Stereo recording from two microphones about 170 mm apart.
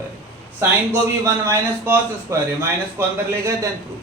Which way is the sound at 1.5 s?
15° right (ahead or behind).